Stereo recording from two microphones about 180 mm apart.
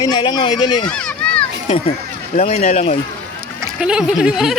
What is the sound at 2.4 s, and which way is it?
Speech, 40° left (ahead or behind).